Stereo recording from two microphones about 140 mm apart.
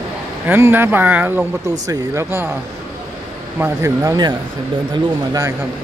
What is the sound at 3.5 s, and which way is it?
Speech, 15° right (ahead or behind).